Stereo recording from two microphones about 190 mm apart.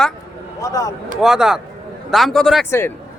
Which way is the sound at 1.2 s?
5° right (ahead or behind).